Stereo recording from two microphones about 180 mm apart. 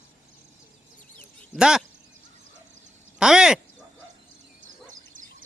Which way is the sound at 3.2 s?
5° right (ahead or behind).